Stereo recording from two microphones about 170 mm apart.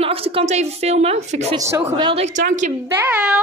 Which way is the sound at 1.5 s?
15° right (ahead or behind).